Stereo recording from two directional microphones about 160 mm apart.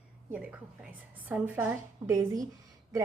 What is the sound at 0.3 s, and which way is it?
A woman's voice, 10° right (ahead or behind).